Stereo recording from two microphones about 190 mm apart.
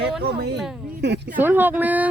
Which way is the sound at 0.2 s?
55° right (ahead or behind).